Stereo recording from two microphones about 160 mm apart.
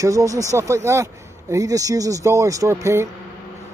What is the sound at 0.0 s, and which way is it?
Speech, 20° right (ahead or behind).